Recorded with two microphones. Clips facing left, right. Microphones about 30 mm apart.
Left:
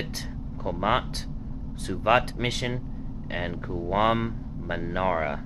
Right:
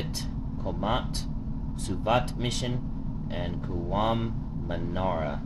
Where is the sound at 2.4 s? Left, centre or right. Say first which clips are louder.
Left 3 dB; left.